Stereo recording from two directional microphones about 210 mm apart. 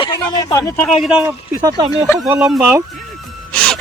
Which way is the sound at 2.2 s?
Centre (ahead or behind).